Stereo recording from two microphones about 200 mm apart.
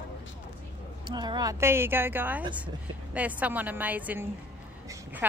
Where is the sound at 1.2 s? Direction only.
20° right (ahead or behind).